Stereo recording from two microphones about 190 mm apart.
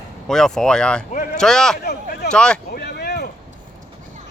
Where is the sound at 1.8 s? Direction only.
55° left (ahead or behind).